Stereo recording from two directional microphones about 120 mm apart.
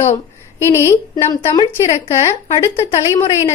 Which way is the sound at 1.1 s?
35° left (ahead or behind).